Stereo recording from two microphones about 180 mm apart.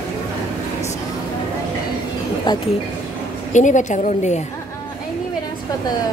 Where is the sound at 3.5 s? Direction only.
45° left (ahead or behind).